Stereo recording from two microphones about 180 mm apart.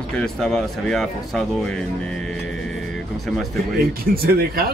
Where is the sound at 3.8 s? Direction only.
55° right (ahead or behind).